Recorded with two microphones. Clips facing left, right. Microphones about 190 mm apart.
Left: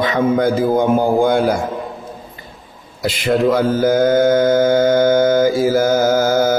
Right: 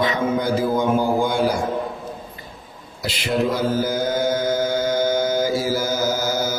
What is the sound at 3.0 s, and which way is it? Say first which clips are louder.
Mantra: left 6 dB; 50° left (ahead or behind).